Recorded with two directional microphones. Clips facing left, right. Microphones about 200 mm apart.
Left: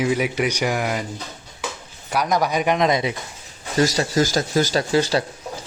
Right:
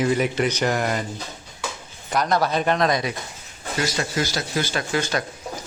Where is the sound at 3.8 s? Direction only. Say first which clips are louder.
Left 6 dB; 35° left (ahead or behind).